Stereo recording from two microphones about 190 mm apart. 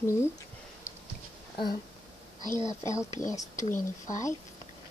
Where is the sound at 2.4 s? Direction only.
20° right (ahead or behind).